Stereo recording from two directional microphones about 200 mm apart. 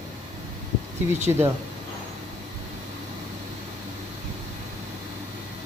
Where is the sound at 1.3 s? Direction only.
15° right (ahead or behind).